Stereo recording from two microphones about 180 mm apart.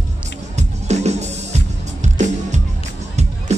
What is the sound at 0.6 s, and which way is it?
Music, 40° right (ahead or behind).